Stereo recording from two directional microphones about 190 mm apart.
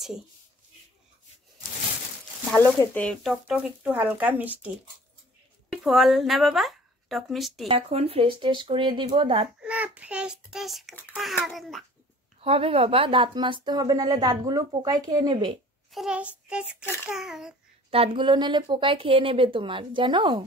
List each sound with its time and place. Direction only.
2.5 s speech: 10° left (ahead or behind); by 4.6 s 10° right (ahead or behind)
5.7 s speech: centre (ahead or behind)
7.6 s speech: 30° right (ahead or behind)
9.6 s speech: 5° right (ahead or behind)
12.4 s speech: 30° right (ahead or behind)
15.9 s a child's voice: 5° right (ahead or behind)
16.8 s child singing: 10° left (ahead or behind)
17.1 s speech: 5° right (ahead or behind)
17.9 s speech: 25° right (ahead or behind)